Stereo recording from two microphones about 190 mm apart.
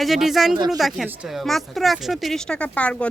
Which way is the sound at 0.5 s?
25° right (ahead or behind).